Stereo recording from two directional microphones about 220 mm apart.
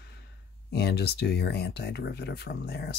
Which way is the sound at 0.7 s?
50° left (ahead or behind).